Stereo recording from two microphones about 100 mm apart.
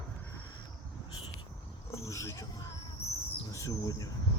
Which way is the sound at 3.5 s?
30° left (ahead or behind).